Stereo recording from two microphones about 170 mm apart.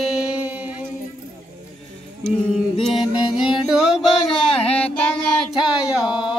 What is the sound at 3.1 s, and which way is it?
Music, 5° right (ahead or behind).